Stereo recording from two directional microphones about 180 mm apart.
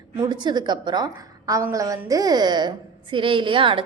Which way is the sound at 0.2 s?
25° right (ahead or behind).